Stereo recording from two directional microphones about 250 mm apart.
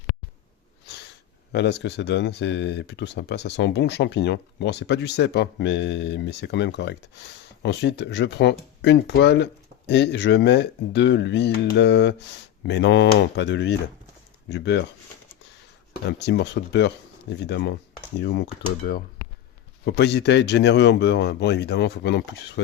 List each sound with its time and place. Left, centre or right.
1.5 s speech: left
16.0 s speech: left
19.8 s speech: left